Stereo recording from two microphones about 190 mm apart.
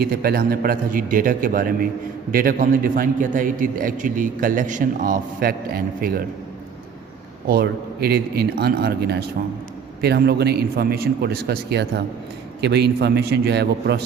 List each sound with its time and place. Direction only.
0.0 s a man's voice: 55° right (ahead or behind)
7.4 s a man's voice: 55° right (ahead or behind)